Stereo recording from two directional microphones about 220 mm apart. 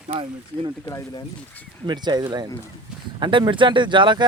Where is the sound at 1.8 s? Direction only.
20° right (ahead or behind).